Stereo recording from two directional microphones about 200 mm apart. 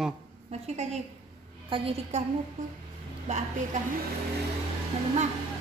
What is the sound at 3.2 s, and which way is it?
Speech, 35° right (ahead or behind).